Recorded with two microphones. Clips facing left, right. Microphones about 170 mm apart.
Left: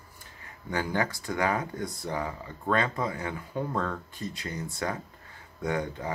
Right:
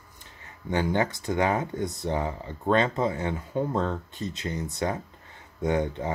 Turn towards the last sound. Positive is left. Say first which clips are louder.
# right 5 dB
turn(degrees=-20)  # may be behind; listen again after turning